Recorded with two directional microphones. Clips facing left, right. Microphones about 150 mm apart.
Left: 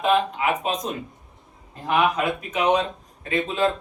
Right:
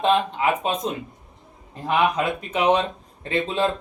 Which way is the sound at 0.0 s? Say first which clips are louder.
Right 1 dB; 30° right (ahead or behind).